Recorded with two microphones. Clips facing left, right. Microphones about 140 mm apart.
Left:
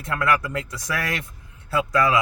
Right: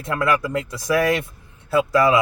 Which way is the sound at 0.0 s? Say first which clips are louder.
Right 2 dB; 25° right (ahead or behind).